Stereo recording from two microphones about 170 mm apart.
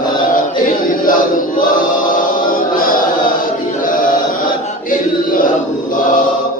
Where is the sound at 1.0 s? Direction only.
55° left (ahead or behind).